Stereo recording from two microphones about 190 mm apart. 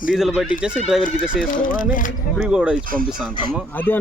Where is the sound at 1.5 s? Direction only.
45° left (ahead or behind).